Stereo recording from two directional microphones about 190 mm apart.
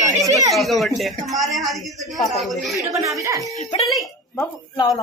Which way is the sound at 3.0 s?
15° right (ahead or behind).